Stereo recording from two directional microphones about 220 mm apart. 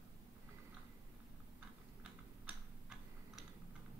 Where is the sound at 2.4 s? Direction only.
5° right (ahead or behind).